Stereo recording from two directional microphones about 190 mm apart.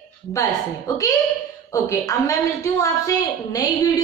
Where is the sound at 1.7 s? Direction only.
15° left (ahead or behind).